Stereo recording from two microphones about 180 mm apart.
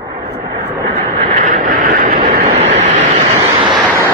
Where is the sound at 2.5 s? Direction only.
40° right (ahead or behind).